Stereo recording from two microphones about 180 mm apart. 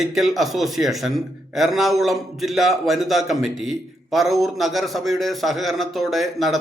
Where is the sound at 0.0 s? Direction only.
Centre (ahead or behind).